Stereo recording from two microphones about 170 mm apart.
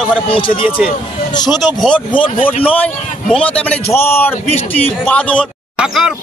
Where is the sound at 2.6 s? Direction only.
10° left (ahead or behind).